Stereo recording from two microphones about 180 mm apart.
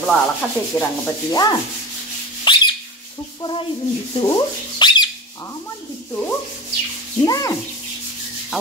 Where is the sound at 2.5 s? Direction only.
25° left (ahead or behind).